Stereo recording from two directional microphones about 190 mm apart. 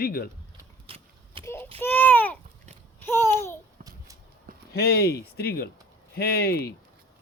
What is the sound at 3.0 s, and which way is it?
Babbling, 10° left (ahead or behind).